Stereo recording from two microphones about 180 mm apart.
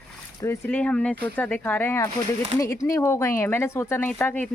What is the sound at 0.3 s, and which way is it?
Speech, 15° left (ahead or behind).